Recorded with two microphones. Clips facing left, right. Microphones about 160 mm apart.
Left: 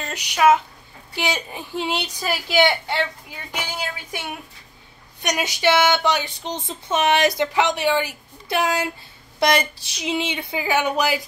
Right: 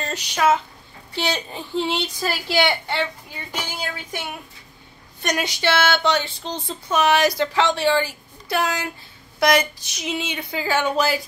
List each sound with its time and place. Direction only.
0.0 s speech: 10° left (ahead or behind)
5.2 s a woman's voice: 15° left (ahead or behind)